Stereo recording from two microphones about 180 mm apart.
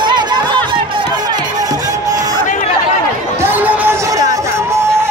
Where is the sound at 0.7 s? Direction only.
25° right (ahead or behind).